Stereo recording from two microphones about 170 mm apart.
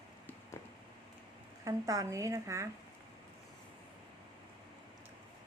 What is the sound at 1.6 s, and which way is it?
A woman's voice, 20° right (ahead or behind).